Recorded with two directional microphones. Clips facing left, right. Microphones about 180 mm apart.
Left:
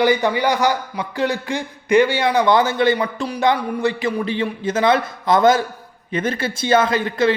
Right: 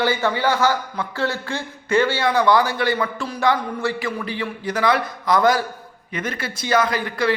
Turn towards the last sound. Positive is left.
turn(degrees=25)  # may be behind; listen again after turning